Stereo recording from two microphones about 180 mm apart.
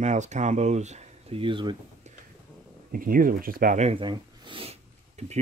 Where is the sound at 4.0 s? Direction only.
25° right (ahead or behind).